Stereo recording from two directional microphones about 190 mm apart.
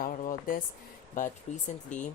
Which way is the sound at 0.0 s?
45° left (ahead or behind).